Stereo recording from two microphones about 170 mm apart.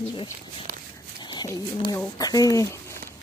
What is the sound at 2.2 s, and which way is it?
Speech, 20° left (ahead or behind).